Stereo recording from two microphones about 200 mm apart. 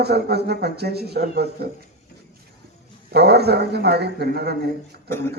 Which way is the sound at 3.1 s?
55° right (ahead or behind).